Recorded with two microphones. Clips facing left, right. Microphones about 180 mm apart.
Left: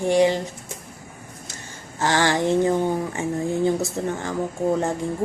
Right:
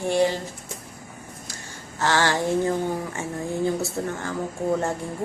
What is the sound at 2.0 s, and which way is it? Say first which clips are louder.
Speech: left 2 dB; 15° left (ahead or behind).